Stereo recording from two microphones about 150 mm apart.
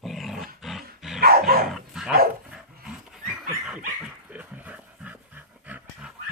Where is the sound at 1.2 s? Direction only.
85° right.